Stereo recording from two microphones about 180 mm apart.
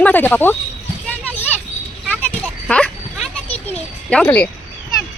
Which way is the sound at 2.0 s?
5° left (ahead or behind).